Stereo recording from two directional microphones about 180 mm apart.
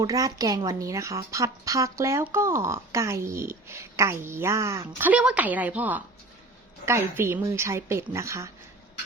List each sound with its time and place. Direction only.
0.0 s a woman's voice: 20° right (ahead or behind)